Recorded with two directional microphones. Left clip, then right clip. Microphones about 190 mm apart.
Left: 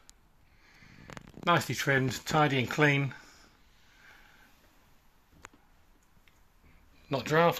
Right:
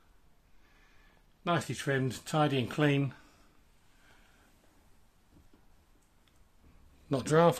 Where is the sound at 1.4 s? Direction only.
10° right (ahead or behind); by 3.4 s 25° right (ahead or behind).